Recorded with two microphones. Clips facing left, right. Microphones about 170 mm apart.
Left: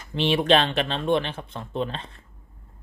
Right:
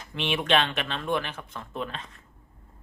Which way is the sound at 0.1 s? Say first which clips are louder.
Left 5 dB; 35° left (ahead or behind).